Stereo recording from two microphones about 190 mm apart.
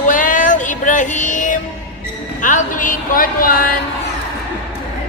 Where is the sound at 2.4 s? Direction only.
45° left (ahead or behind).